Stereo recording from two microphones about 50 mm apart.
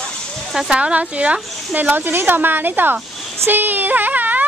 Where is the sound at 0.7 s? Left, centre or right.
Right.